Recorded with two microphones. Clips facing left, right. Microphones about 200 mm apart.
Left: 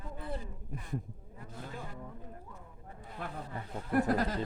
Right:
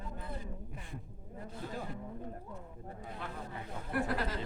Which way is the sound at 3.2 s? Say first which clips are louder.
Left 4 dB; 45° left (ahead or behind).